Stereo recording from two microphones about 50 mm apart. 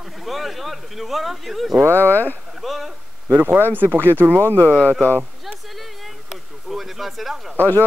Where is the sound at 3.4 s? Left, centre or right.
Right.